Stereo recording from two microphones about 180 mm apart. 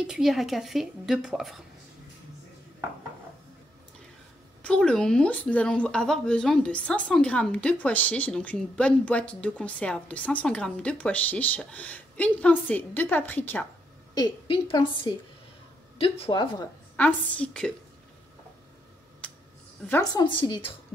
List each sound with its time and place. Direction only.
0.0 s a woman's voice: centre (ahead or behind)
4.6 s speech: 5° left (ahead or behind)
14.1 s a woman's voice: 25° left (ahead or behind)
16.9 s speech: 10° left (ahead or behind)
19.9 s a woman's voice: 20° left (ahead or behind)